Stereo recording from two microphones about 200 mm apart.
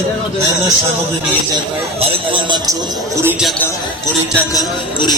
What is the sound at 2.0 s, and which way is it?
A man's voice, 25° right (ahead or behind).